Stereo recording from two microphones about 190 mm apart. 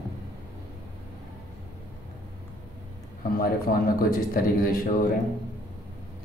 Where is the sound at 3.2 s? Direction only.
50° left (ahead or behind).